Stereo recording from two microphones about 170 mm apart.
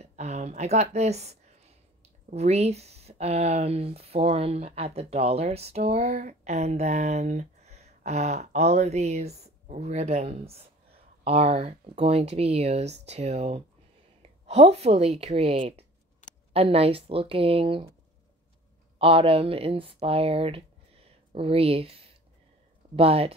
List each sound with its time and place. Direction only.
0.0 s a sound: 40° right (ahead or behind)
2.3 s speech: 40° right (ahead or behind)
18.9 s speech: 35° right (ahead or behind)